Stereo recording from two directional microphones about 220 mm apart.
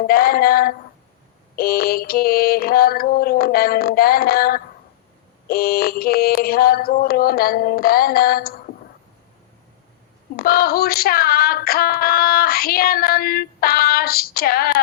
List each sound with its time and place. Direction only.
0.1 s female singing: 45° left (ahead or behind)
10.3 s female singing: 45° left (ahead or behind)